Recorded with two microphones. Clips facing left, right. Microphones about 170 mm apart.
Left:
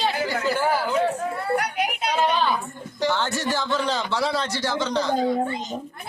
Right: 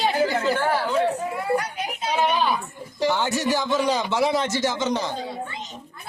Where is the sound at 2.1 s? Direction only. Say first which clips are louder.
Right 1 dB; 15° right (ahead or behind).